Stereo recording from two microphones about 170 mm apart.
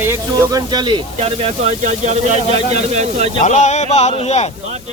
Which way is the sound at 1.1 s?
35° right (ahead or behind).